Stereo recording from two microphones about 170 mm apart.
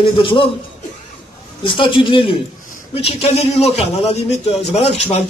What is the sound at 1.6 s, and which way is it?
A man's voice, 30° left (ahead or behind).